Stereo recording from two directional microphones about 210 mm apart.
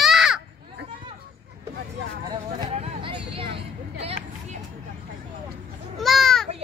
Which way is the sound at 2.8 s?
25° right (ahead or behind).